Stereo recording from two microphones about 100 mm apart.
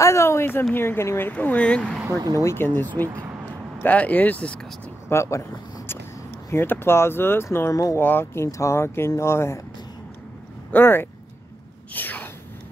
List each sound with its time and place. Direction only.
0.0 s a sound: 30° left (ahead or behind)
0.7 s speech: 25° left (ahead or behind)
2.0 s speech: 40° right (ahead or behind)
2.3 s speech: 25° left (ahead or behind)
3.1 s speech: 25° right (ahead or behind)
3.8 s speech: 15° left (ahead or behind)
5.1 s speech: 30° left (ahead or behind)
10.7 s speech: 20° left (ahead or behind)
11.9 s a sound: 15° left (ahead or behind)